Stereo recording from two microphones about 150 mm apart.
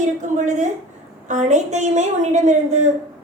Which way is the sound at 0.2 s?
55° right (ahead or behind).